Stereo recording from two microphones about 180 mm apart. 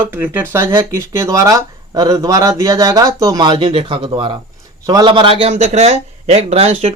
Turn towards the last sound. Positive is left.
turn(degrees=-35)  # may be behind; listen again after turning